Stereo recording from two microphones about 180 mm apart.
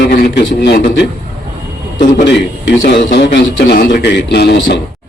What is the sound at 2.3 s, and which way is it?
A man's voice, 75° left (ahead or behind).